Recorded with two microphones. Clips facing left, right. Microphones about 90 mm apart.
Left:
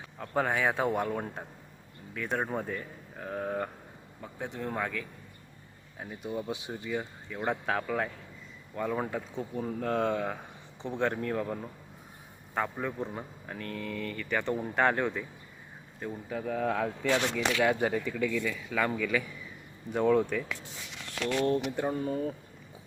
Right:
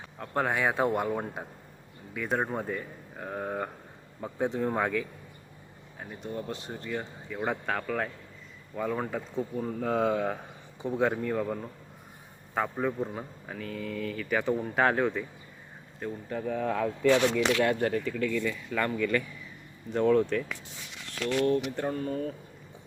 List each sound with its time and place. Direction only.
0.2 s speech: centre (ahead or behind)
4.2 s speech: 20° right (ahead or behind)
6.0 s speech: 5° left (ahead or behind)
21.4 s speech: 25° left (ahead or behind)
21.8 s speech: 10° left (ahead or behind)